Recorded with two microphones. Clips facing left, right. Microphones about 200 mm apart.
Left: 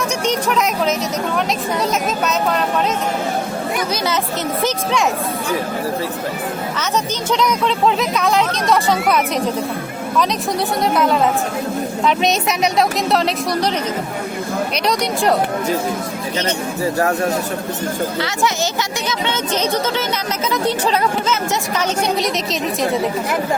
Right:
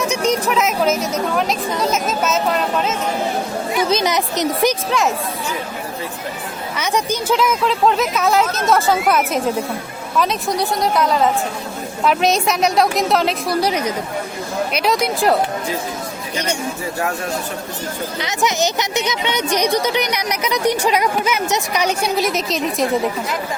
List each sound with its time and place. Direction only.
0.3 s speech: 5° right (ahead or behind)
3.8 s speech: 20° right (ahead or behind)
6.7 s speech: 10° right (ahead or behind)
14.8 s speech: centre (ahead or behind)
18.2 s speech: 20° right (ahead or behind); by 22.9 s centre (ahead or behind)